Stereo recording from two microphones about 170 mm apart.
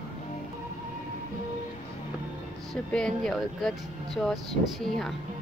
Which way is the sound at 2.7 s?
5° left (ahead or behind).